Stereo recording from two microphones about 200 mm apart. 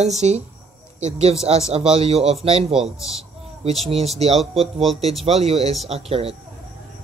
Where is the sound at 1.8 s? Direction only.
30° right (ahead or behind).